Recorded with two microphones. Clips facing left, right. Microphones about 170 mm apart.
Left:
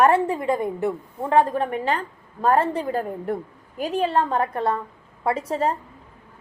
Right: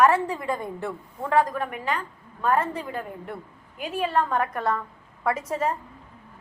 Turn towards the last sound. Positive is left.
turn(degrees=35)  # may be behind; listen again after turning